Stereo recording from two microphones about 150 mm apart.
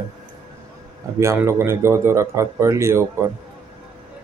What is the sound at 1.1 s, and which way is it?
Speech, 20° right (ahead or behind).